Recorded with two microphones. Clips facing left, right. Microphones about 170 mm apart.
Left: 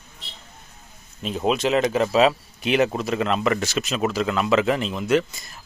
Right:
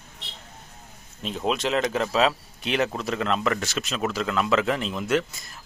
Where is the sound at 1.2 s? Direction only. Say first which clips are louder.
Left 4 dB; 5° left (ahead or behind).